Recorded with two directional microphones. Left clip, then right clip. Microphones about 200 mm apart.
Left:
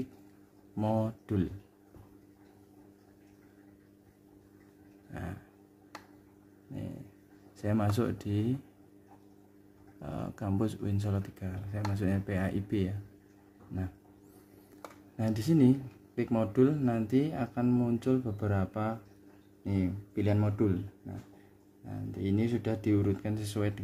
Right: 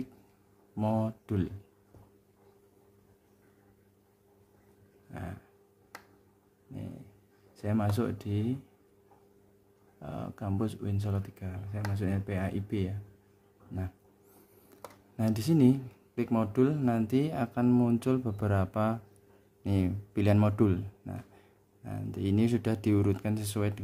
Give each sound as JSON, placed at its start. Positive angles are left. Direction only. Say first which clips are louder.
{"t": 0.7, "sound": "speech", "louder": "even", "side_deg": -10}
{"t": 5.1, "sound": "dog", "louder": "even", "side_deg": -5}
{"t": 7.5, "sound": "speech", "louder": "left 1 dB", "side_deg": -5}
{"t": 9.9, "sound": "speech", "louder": "even", "side_deg": -5}
{"t": 15.1, "sound": "speech", "louder": "even", "side_deg": -20}
{"t": 21.8, "sound": "speech", "louder": "right 1 dB", "side_deg": -30}